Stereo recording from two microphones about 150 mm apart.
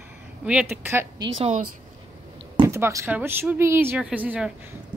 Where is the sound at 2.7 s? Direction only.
20° right (ahead or behind).